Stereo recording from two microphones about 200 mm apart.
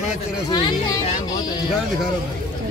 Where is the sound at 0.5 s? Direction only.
25° left (ahead or behind).